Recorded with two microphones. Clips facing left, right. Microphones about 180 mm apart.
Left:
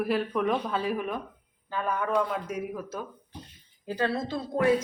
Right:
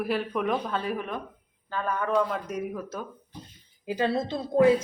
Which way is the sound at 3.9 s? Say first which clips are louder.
Right 2 dB; 20° right (ahead or behind).